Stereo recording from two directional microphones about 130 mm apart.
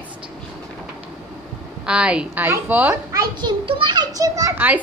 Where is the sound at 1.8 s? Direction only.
10° right (ahead or behind).